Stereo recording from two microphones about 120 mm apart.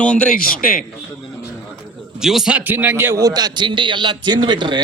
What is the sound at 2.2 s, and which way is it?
A man's voice, 5° right (ahead or behind).